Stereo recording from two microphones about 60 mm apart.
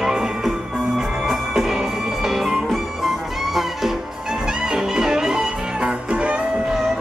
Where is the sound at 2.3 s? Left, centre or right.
Centre.